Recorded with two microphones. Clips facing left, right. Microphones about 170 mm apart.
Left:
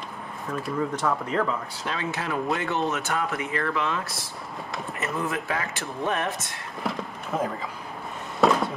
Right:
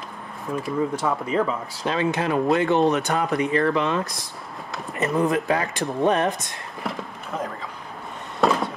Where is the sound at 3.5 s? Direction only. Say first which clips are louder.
Right 5 dB; 35° right (ahead or behind).